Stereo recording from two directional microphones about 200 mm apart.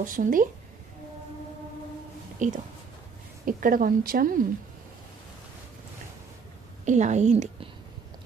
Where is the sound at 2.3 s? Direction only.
40° right (ahead or behind).